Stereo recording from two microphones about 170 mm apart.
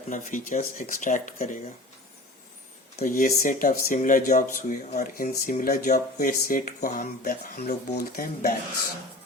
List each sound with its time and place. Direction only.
0.1 s speech: 50° left (ahead or behind)
3.0 s speech: 55° left (ahead or behind)